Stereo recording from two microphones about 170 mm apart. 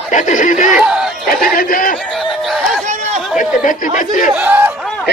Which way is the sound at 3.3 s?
50° left (ahead or behind).